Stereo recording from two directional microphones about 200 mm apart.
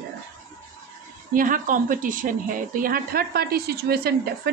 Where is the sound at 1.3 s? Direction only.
45° right (ahead or behind).